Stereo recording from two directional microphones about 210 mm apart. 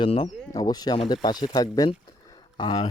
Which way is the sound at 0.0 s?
30° left (ahead or behind).